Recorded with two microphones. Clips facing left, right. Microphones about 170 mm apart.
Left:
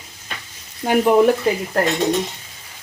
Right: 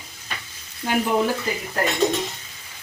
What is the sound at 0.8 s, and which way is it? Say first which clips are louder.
Frying: left 7 dB; 55° left (ahead or behind).